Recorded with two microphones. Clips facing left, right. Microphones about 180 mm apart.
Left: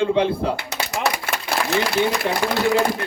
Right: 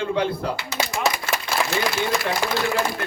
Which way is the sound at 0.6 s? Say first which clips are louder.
Even; 65° left (ahead or behind).